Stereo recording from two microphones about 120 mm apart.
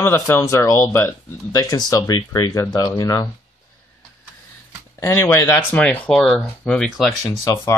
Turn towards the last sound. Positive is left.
turn(degrees=25)  # may be behind; listen again after turning